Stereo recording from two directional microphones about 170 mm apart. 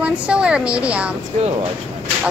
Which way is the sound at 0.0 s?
5° right (ahead or behind).